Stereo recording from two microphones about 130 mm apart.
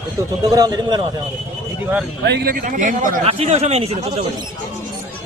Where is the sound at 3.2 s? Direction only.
50° right (ahead or behind).